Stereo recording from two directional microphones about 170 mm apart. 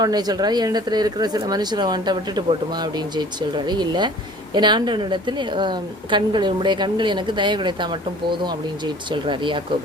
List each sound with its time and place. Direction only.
0.0 s speech: 25° right (ahead or behind)
9.1 s speech: 30° right (ahead or behind)